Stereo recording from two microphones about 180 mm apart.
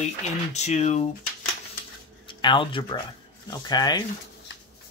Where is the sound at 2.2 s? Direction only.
25° left (ahead or behind).